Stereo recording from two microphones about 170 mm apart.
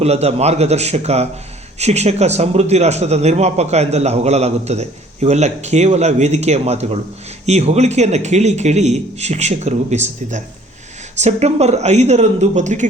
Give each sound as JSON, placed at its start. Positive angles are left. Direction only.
{"t": 0.0, "sound": "a man's voice", "side_deg": -40}